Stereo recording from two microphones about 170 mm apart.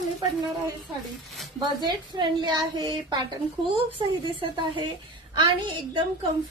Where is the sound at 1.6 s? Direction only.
25° right (ahead or behind).